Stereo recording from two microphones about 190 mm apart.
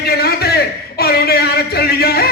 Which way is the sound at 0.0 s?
55° left (ahead or behind).